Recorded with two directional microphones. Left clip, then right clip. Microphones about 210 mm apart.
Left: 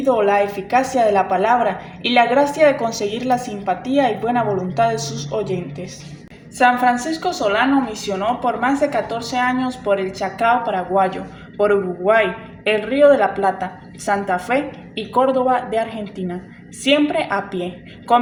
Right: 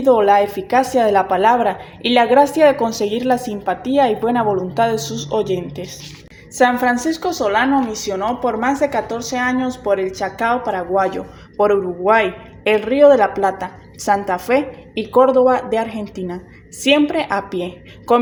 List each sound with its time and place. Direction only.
0.0 s a woman's voice: 40° right (ahead or behind)
6.6 s a woman's voice: 55° right (ahead or behind)